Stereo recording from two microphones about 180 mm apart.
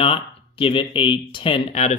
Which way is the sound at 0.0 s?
30° left (ahead or behind).